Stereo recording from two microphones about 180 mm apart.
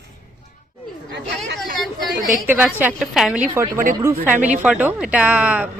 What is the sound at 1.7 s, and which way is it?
Chatter, centre (ahead or behind).